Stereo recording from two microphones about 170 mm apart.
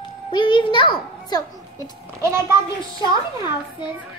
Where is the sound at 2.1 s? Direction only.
15° right (ahead or behind).